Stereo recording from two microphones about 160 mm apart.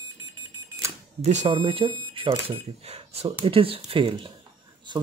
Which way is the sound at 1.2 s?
45° right (ahead or behind).